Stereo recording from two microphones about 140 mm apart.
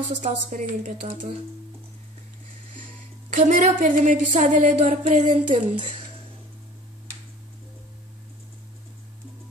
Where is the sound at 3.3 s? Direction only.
65° right (ahead or behind).